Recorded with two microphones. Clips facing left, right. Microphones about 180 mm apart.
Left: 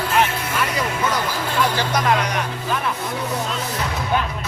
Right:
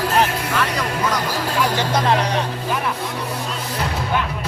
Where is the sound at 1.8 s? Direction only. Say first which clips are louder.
Right 1 dB; 25° right (ahead or behind).